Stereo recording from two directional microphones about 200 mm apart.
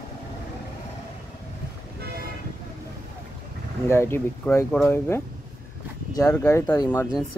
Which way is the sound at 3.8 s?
10° left (ahead or behind).